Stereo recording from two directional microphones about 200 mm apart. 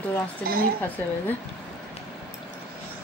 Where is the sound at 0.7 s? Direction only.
10° left (ahead or behind).